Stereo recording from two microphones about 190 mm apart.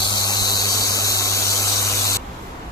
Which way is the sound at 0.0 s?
20° left (ahead or behind).